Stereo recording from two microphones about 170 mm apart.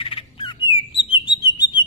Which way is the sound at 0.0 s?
30° left (ahead or behind).